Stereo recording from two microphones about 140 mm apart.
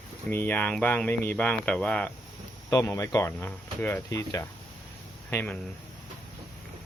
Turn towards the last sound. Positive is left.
turn(degrees=15)  # may be behind; listen again after turning